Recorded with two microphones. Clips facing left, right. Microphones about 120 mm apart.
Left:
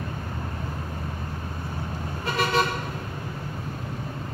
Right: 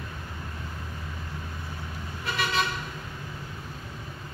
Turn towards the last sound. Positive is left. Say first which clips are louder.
# left 5 dB
turn(degrees=45)  # may be behind; listen again after turning